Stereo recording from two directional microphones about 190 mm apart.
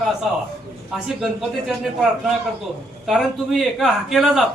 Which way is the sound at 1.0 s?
5° right (ahead or behind).